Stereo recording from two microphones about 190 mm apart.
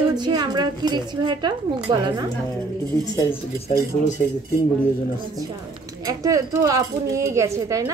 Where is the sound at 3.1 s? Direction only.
20° left (ahead or behind).